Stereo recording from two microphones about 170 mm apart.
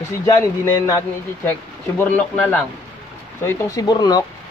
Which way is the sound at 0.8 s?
15° left (ahead or behind).